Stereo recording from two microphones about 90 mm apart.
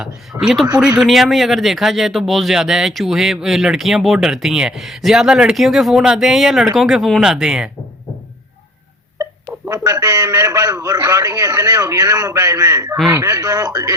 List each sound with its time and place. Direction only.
0.3 s speech: 5° right (ahead or behind)
9.6 s a man's voice: 40° right (ahead or behind)